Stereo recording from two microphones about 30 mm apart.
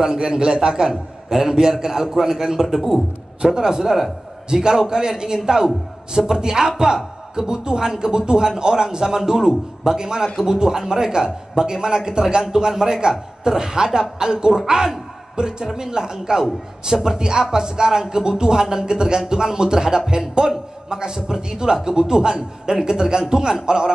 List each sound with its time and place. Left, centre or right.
0.1 s speech: right
1.9 s a man's voice: centre
3.5 s a man's voice: centre
7.3 s a man's voice: right